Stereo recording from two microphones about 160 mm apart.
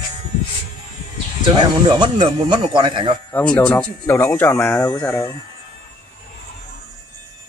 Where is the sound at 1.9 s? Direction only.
25° right (ahead or behind).